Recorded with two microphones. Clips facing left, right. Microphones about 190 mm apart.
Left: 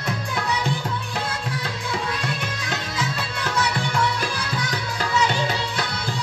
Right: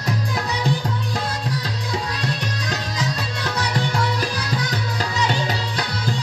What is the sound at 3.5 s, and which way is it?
Music, 35° right (ahead or behind).